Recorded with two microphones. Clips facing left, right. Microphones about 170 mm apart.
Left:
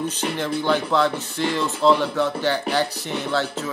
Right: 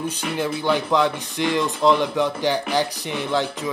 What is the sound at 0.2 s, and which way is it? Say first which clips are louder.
Speech: right 1 dB; 10° right (ahead or behind).